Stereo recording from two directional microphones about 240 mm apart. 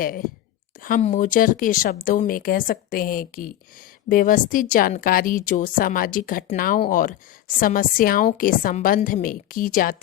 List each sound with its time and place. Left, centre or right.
0.8 s a woman's voice: left